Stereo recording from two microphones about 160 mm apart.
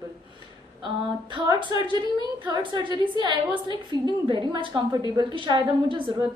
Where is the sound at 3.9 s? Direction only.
25° right (ahead or behind).